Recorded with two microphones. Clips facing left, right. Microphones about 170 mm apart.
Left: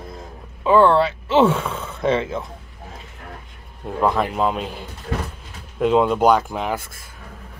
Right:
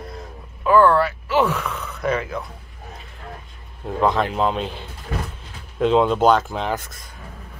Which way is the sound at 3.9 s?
5° left (ahead or behind).